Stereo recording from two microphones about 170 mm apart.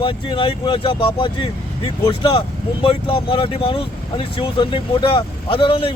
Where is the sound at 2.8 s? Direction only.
30° left (ahead or behind).